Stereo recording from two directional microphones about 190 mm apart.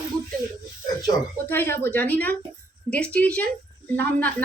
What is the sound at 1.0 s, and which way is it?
Speech, 20° left (ahead or behind).